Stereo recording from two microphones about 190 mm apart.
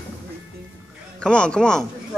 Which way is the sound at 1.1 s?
5° left (ahead or behind).